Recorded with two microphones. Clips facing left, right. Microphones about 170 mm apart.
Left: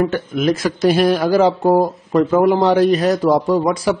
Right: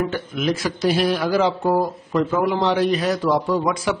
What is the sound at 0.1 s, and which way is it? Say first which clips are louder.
A man's voice: left 5 dB; 45° left (ahead or behind).